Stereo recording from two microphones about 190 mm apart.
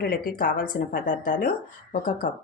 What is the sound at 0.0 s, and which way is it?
A woman's voice, 50° left (ahead or behind).